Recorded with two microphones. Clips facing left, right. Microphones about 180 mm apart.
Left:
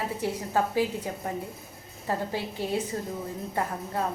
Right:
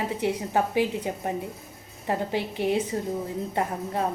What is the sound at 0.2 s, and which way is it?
A woman's voice, 20° right (ahead or behind).